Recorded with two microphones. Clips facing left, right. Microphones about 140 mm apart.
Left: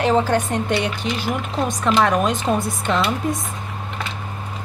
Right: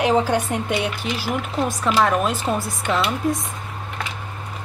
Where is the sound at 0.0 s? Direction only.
10° right (ahead or behind).